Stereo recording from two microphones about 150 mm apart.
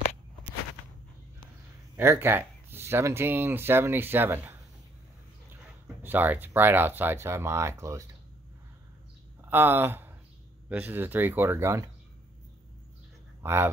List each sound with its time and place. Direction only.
2.0 s speech: 15° right (ahead or behind)
6.0 s speech: 10° right (ahead or behind)
9.4 s speech: 15° right (ahead or behind)
13.4 s speech: 15° right (ahead or behind)